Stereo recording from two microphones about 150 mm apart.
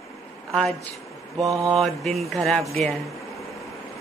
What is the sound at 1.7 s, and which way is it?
A woman's voice, centre (ahead or behind).